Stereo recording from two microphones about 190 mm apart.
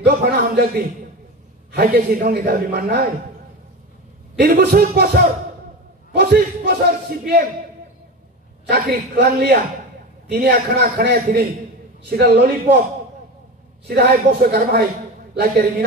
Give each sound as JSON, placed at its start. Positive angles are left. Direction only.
{"t": 0.0, "sound": "a man's voice", "side_deg": -55}
{"t": 4.4, "sound": "a man's voice", "side_deg": -55}
{"t": 8.6, "sound": "a man's voice", "side_deg": -55}
{"t": 13.8, "sound": "a man's voice", "side_deg": -55}